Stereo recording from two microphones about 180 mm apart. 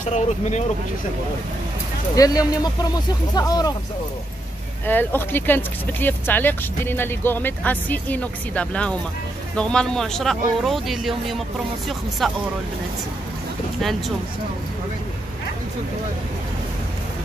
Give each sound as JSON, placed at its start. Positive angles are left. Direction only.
{"t": 0.0, "sound": "speech", "side_deg": 40}
{"t": 2.1, "sound": "speech", "side_deg": 20}
{"t": 4.8, "sound": "speech", "side_deg": 10}
{"t": 13.7, "sound": "speech", "side_deg": 0}